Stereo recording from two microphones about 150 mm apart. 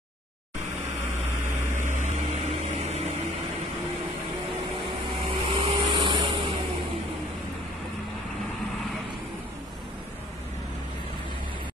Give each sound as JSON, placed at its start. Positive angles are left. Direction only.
{"t": 1.8, "sound": "a sound", "side_deg": -55}
{"t": 2.2, "sound": "vehicle", "side_deg": -45}
{"t": 5.3, "sound": "vehicle", "side_deg": -35}